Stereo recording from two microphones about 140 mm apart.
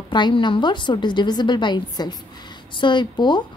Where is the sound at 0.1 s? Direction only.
35° left (ahead or behind).